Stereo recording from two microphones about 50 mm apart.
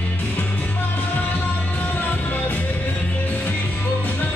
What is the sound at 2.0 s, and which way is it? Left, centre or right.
Music, left.